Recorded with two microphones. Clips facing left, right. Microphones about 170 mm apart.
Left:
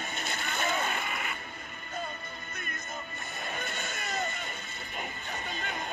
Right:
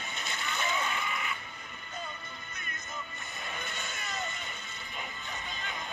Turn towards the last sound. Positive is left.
turn(degrees=50)  # may be behind; listen again after turning